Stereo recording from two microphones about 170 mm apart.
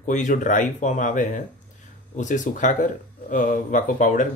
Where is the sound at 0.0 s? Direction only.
45° left (ahead or behind).